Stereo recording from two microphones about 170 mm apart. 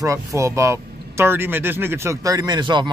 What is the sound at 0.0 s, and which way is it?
Speech, 20° right (ahead or behind).